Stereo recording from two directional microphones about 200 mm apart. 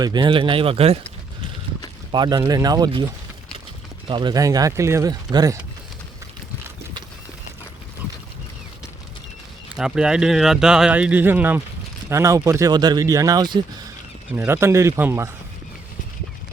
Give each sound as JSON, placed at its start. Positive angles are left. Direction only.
{"t": 0.0, "sound": "speech", "side_deg": -20}
{"t": 2.1, "sound": "speech", "side_deg": -20}
{"t": 4.1, "sound": "speech", "side_deg": -20}
{"t": 9.7, "sound": "speech", "side_deg": -5}